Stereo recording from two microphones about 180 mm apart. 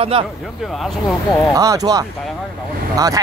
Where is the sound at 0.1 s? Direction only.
30° right (ahead or behind).